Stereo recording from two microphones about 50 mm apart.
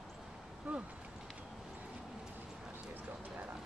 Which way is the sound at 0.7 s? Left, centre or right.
Right.